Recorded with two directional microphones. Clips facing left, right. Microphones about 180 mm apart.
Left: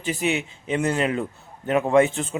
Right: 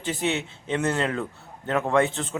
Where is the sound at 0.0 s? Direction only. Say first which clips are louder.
Left 2 dB; 10° left (ahead or behind).